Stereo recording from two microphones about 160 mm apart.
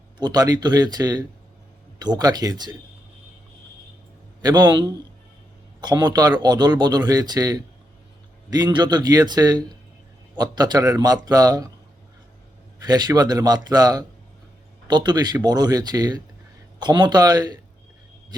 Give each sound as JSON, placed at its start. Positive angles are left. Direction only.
{"t": 0.2, "sound": "speech", "side_deg": -25}
{"t": 4.4, "sound": "speech", "side_deg": -25}
{"t": 12.8, "sound": "speech", "side_deg": -25}